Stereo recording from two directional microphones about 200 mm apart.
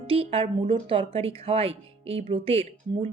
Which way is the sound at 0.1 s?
30° right (ahead or behind).